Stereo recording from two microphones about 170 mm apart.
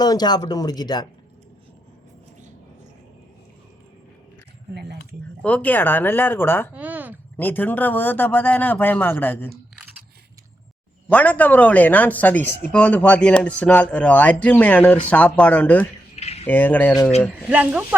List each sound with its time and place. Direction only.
0.0 s speech: 25° left (ahead or behind)
5.4 s speech: 10° left (ahead or behind)
6.7 s a sound: 10° right (ahead or behind)
7.3 s speech: 10° left (ahead or behind)
11.1 s speech: 10° left (ahead or behind)
16.1 s a sound: 40° left (ahead or behind)
16.5 s speech: 10° left (ahead or behind)
17.5 s speech: 10° right (ahead or behind)